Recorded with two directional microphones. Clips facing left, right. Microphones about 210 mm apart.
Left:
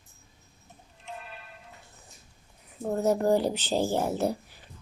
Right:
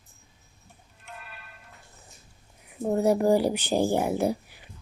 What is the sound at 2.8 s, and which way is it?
Speech, 10° right (ahead or behind).